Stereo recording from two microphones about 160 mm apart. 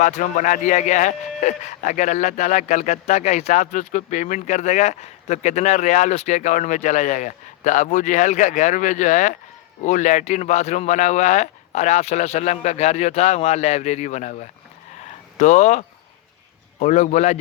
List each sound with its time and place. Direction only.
0.0 s a man's voice: 50° left (ahead or behind)
16.8 s a man's voice: 45° left (ahead or behind)